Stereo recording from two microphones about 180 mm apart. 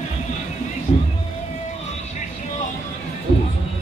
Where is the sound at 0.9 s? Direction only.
35° left (ahead or behind).